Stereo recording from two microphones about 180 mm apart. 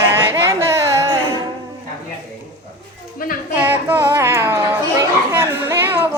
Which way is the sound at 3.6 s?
15° right (ahead or behind).